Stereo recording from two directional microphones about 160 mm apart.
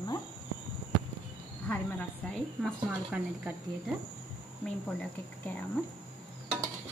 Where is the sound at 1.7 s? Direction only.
10° left (ahead or behind).